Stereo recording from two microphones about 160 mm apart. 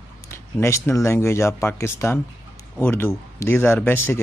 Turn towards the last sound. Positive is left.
turn(degrees=15)  # may be behind; listen again after turning